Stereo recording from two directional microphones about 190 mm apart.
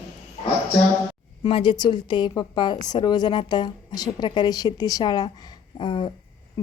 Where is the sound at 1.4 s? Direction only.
25° left (ahead or behind).